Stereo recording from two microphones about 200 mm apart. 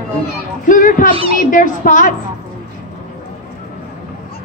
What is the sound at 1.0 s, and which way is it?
Speech, 30° right (ahead or behind).